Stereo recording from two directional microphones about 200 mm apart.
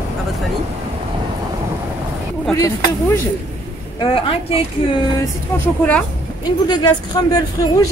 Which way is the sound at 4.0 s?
30° left (ahead or behind).